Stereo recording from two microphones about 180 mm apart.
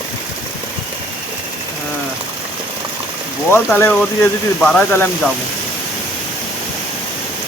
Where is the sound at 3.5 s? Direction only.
15° left (ahead or behind).